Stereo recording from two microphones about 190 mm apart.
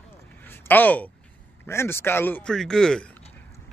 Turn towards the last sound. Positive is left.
turn(degrees=5)  # may be behind; listen again after turning